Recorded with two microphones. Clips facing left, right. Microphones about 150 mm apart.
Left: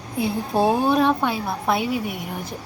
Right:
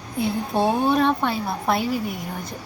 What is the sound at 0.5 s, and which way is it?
A woman's voice, 5° left (ahead or behind).